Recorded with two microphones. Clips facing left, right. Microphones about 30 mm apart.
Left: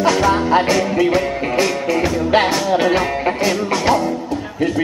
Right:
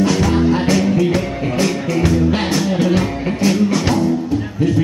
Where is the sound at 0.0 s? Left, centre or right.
Centre.